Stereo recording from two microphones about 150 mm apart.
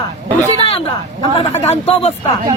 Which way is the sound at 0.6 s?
35° left (ahead or behind).